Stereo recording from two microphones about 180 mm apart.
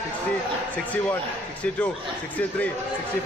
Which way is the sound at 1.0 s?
10° left (ahead or behind).